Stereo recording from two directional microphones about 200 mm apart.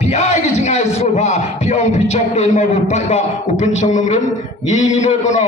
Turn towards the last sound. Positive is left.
turn(degrees=35)  # may be behind; listen again after turning